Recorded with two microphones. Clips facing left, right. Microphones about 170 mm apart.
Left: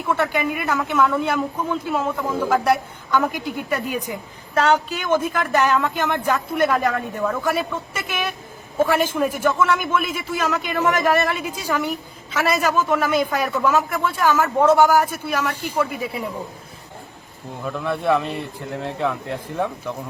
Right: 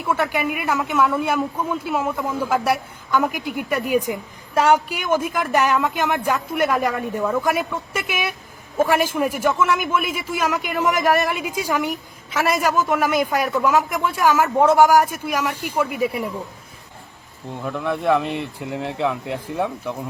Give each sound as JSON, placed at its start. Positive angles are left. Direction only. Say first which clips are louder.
{"t": 0.1, "sound": "a man's voice", "louder": "even", "side_deg": -10}
{"t": 17.6, "sound": "a man's voice", "louder": "right 1 dB", "side_deg": -10}